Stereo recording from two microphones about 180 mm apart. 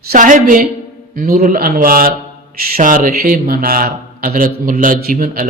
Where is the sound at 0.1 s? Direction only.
45° right (ahead or behind).